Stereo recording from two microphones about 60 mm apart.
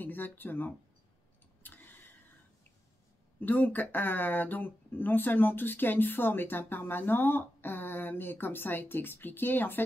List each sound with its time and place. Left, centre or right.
0.0 s speech: left
1.6 s vehicle: left
3.3 s speech: left